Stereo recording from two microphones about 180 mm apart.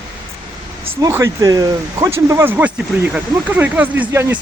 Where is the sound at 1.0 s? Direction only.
15° right (ahead or behind).